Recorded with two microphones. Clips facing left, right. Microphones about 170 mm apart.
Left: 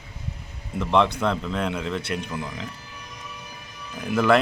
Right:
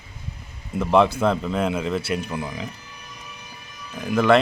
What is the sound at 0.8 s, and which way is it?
A man's voice, 5° right (ahead or behind).